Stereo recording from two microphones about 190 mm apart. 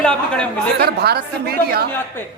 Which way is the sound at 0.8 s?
55° right (ahead or behind).